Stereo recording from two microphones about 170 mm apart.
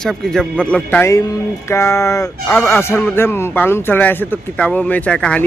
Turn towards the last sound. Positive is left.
turn(degrees=5)  # may be behind; listen again after turning